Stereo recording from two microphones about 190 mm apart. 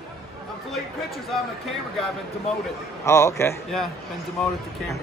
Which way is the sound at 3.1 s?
15° left (ahead or behind).